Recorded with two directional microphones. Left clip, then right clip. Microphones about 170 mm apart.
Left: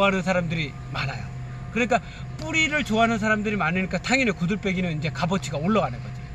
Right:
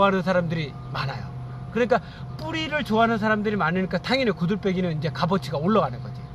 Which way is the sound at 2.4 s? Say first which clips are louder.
Left 4 dB; 20° right (ahead or behind).